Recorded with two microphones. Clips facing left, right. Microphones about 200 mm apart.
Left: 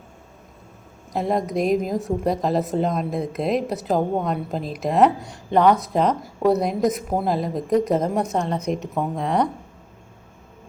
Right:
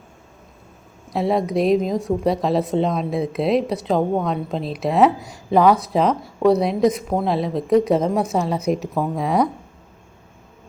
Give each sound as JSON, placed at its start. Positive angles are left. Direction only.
{"t": 1.1, "sound": "speech", "side_deg": -5}